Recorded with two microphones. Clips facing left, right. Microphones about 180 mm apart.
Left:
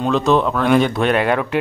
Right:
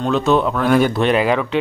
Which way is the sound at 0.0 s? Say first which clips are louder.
Even; centre (ahead or behind).